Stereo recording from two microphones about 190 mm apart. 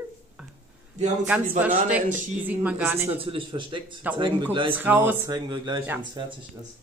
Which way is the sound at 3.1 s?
30° right (ahead or behind).